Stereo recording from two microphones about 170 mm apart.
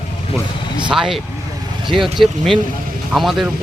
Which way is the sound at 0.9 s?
5° right (ahead or behind).